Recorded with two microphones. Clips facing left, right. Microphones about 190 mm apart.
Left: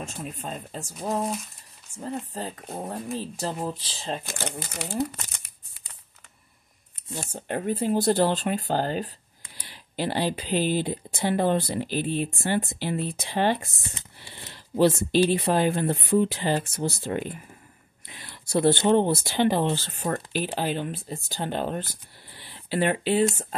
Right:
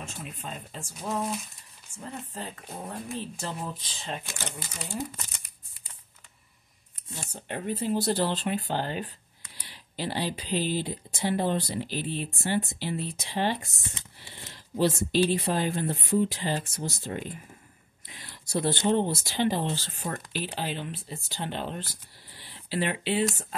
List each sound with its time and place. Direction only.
0.0 s speech: 40° left (ahead or behind)
2.0 s speech: 35° left (ahead or behind)
4.5 s speech: 65° left (ahead or behind)
7.3 s speech: 45° left (ahead or behind)
9.6 s speech: 50° left (ahead or behind)
20.3 s speech: 50° left (ahead or behind)
22.4 s a sound: 55° left (ahead or behind)